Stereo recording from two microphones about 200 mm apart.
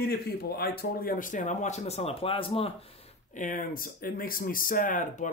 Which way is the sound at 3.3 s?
40° left (ahead or behind).